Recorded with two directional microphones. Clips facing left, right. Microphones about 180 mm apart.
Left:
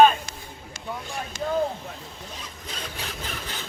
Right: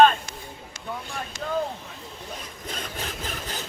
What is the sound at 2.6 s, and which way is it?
Sawing, 45° right (ahead or behind).